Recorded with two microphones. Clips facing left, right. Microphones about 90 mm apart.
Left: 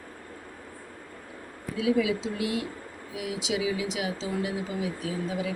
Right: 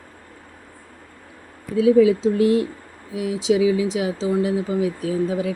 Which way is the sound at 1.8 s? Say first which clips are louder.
Right 11 dB; 40° right (ahead or behind).